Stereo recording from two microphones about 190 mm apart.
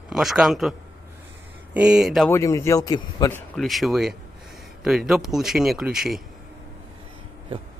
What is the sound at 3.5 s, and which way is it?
Speech, centre (ahead or behind).